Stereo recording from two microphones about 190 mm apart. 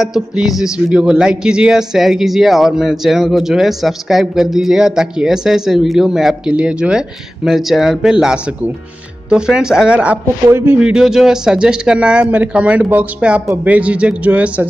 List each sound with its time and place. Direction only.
0.0 s speech: centre (ahead or behind)